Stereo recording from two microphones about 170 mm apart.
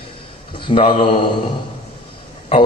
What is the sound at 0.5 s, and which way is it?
Speech, 30° left (ahead or behind).